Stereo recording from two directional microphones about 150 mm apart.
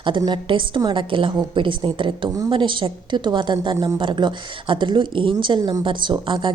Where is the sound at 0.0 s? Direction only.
30° right (ahead or behind).